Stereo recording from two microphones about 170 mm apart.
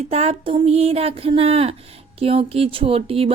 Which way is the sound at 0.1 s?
35° right (ahead or behind).